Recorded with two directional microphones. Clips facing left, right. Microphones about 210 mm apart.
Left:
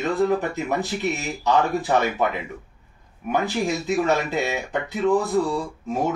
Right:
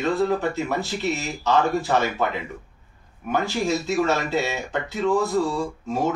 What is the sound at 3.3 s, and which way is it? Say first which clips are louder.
Speech: even; 15° left (ahead or behind).